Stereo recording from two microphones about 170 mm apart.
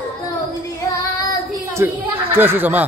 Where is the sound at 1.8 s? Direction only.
15° right (ahead or behind).